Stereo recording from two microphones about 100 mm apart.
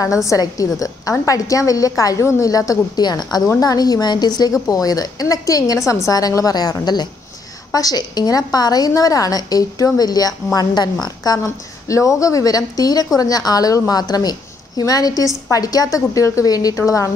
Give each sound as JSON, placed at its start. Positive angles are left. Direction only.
{"t": 0.0, "sound": "a woman's voice", "side_deg": 35}